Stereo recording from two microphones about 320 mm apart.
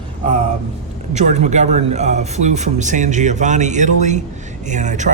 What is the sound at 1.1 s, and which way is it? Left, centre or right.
Speech, right.